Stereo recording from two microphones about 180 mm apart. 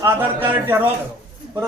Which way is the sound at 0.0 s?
10° right (ahead or behind).